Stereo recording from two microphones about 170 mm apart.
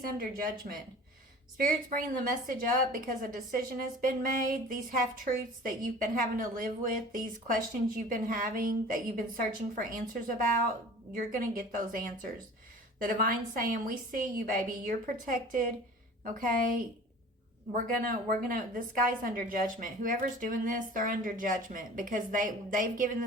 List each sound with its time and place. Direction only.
0.1 s a woman's voice: 55° right (ahead or behind)